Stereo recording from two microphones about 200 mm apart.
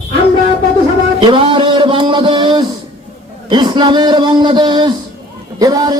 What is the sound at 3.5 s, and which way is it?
A man's voice, 20° right (ahead or behind).